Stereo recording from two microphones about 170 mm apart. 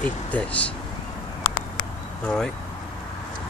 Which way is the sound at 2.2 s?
5° left (ahead or behind).